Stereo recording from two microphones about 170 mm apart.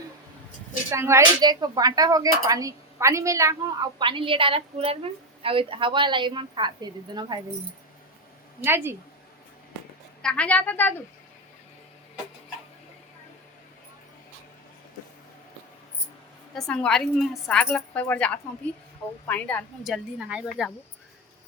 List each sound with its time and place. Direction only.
0.9 s a woman's voice: 15° right (ahead or behind)
8.6 s a woman's voice: 15° right (ahead or behind)
10.2 s a woman's voice: 10° left (ahead or behind)
16.6 s a woman's voice: 5° left (ahead or behind)